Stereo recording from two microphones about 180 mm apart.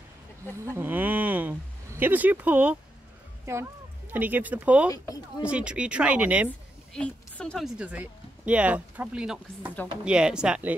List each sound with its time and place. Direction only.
0.7 s a sound: 10° right (ahead or behind)
2.0 s speech: 10° right (ahead or behind)
4.9 s speech: 20° left (ahead or behind)
5.4 s speech: 5° right (ahead or behind)
6.9 s speech: 5° left (ahead or behind)